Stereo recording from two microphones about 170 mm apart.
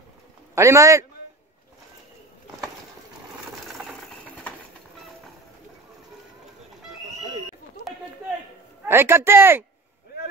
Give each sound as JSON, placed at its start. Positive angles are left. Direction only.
{"t": 0.6, "sound": "speech", "side_deg": -15}
{"t": 8.8, "sound": "speech", "side_deg": -15}